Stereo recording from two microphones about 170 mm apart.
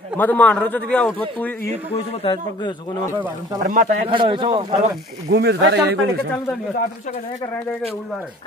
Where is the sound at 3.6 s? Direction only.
50° right (ahead or behind).